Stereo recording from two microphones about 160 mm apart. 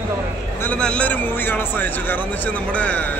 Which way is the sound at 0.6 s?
5° left (ahead or behind).